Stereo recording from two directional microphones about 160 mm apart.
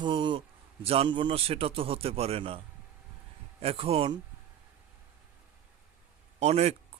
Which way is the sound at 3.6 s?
40° right (ahead or behind).